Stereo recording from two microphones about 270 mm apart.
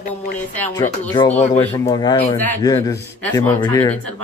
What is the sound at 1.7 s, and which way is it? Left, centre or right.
Speech, centre.